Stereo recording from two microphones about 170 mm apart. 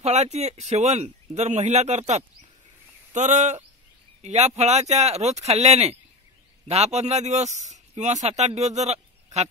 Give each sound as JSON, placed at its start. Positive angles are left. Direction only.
{"t": 0.0, "sound": "speech", "side_deg": -40}